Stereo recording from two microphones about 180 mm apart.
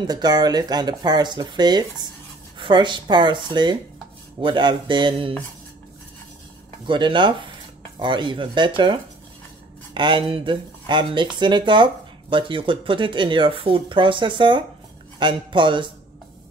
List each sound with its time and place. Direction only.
0.0 s speech: 20° right (ahead or behind)
6.9 s speech: 25° right (ahead or behind)
9.9 s speech: 25° right (ahead or behind)